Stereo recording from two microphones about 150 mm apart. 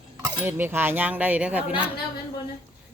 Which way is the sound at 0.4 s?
15° right (ahead or behind).